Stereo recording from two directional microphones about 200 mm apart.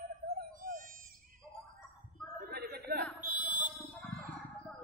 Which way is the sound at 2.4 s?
50° right (ahead or behind).